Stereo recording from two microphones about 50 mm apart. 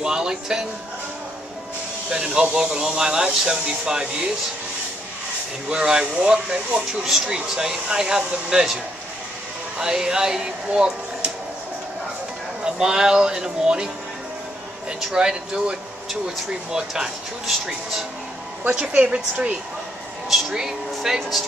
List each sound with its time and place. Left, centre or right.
0.0 s a sound: centre
2.0 s speech: centre
5.7 s speech: centre
9.8 s speech: centre
12.6 s speech: centre
15.1 s speech: centre
18.7 s speech: right
20.2 s speech: centre